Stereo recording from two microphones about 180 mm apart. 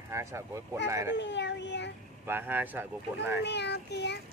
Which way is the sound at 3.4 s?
70° left (ahead or behind).